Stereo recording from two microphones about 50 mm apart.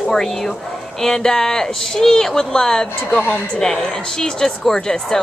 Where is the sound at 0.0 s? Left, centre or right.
Centre.